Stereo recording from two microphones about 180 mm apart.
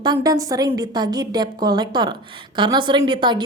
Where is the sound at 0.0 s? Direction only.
20° right (ahead or behind).